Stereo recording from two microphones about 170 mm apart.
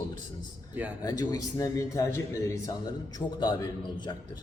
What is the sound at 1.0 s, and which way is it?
A man's voice, 20° left (ahead or behind).